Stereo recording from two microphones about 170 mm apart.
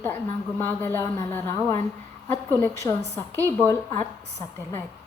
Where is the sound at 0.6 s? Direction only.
15° left (ahead or behind).